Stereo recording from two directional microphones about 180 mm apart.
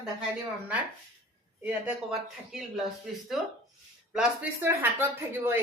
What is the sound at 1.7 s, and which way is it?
A man's voice, 5° right (ahead or behind).